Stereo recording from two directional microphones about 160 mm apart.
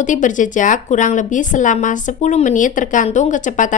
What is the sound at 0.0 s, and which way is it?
Speech, 50° left (ahead or behind).